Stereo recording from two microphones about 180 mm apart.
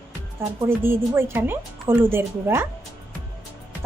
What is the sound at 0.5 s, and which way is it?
A woman's voice, 15° right (ahead or behind).